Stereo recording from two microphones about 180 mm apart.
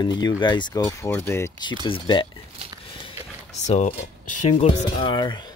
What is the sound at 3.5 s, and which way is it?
Speech, 40° left (ahead or behind).